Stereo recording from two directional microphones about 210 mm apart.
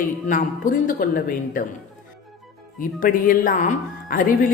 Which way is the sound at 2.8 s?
40° left (ahead or behind).